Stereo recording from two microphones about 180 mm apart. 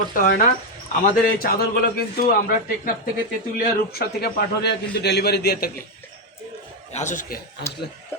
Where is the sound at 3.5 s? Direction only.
60° left (ahead or behind).